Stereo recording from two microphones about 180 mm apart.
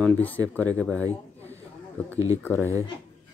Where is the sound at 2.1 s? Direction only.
20° right (ahead or behind).